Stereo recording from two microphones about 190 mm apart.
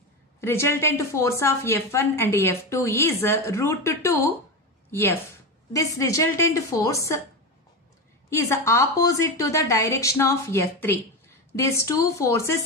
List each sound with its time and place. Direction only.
0.4 s a woman's voice: 15° left (ahead or behind)
5.7 s a woman's voice: 20° left (ahead or behind)
8.3 s a woman's voice: 15° left (ahead or behind)